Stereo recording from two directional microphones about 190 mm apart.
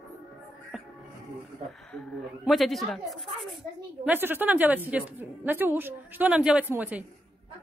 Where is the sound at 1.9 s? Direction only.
5° left (ahead or behind).